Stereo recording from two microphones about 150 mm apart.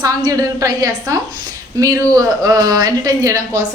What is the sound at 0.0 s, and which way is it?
A woman's voice, 25° right (ahead or behind).